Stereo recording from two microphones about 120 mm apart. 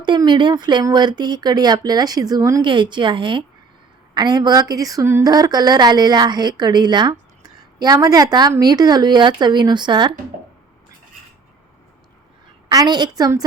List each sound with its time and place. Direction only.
0.3 s a woman's voice: 40° right (ahead or behind)
2.6 s a woman's voice: 40° right (ahead or behind)
12.7 s a woman's voice: 35° right (ahead or behind)